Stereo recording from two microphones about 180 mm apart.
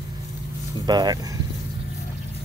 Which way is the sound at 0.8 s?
20° right (ahead or behind).